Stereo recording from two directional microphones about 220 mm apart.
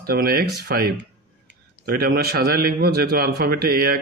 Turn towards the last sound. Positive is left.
turn(degrees=-45)  # may be behind; listen again after turning